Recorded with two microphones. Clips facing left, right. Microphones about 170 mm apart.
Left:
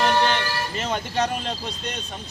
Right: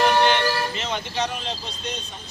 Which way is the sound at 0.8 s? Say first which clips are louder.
Left 2 dB; 50° left (ahead or behind).